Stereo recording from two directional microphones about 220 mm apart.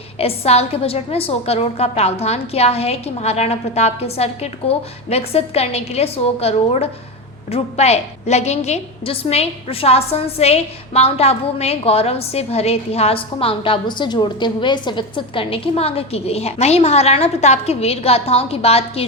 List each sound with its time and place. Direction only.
0.2 s a woman's voice: 25° left (ahead or behind)